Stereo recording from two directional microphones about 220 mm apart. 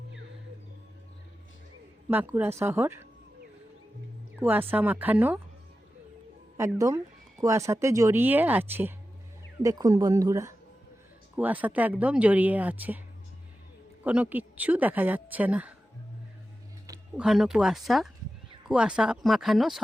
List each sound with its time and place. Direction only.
2.0 s speech: 10° right (ahead or behind)
4.4 s speech: 10° right (ahead or behind)
6.7 s speech: 15° right (ahead or behind)
14.0 s speech: 5° right (ahead or behind)
17.2 s speech: centre (ahead or behind)